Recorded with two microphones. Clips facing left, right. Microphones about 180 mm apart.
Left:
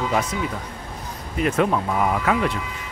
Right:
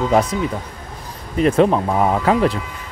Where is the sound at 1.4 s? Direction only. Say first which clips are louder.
Right 6 dB; 35° right (ahead or behind).